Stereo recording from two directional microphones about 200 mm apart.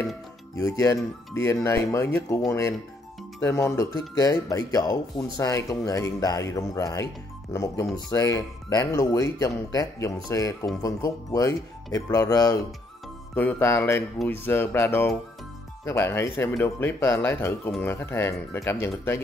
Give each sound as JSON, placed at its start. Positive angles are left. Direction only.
{"t": 0.6, "sound": "speech", "side_deg": 15}